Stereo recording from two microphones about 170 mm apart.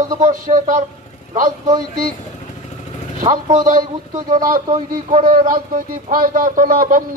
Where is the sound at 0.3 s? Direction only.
50° right (ahead or behind).